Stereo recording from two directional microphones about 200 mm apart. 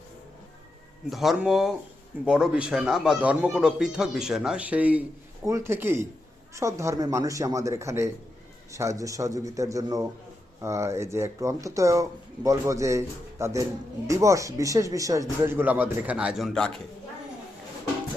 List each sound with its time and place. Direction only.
1.1 s a man's voice: centre (ahead or behind)